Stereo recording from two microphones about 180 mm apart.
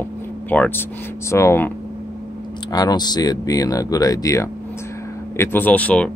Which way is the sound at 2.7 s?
20° left (ahead or behind).